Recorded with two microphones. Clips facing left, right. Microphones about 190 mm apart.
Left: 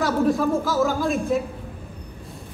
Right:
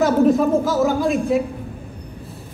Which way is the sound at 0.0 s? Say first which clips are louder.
Right 5 dB; 20° right (ahead or behind).